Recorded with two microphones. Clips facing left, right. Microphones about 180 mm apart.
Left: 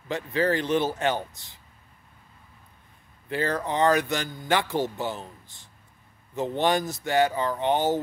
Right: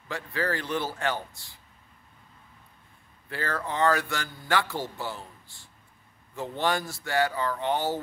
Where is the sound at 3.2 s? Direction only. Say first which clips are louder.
Left 5 dB; 20° left (ahead or behind).